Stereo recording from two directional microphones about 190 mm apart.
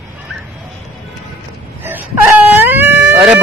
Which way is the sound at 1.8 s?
10° right (ahead or behind).